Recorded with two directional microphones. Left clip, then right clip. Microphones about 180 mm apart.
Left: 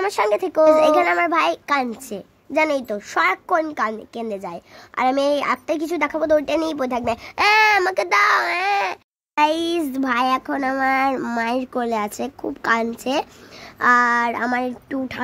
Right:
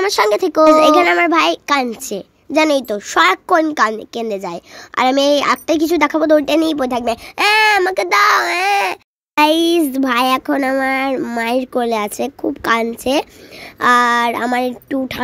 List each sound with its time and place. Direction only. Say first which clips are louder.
0.0 s a child's voice: right 5 dB; 20° right (ahead or behind)